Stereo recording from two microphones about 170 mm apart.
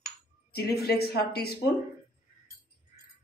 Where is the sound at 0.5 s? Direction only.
70° left (ahead or behind).